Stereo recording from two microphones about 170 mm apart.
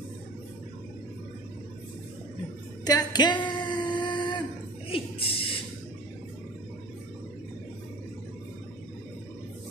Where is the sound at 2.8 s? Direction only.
25° left (ahead or behind).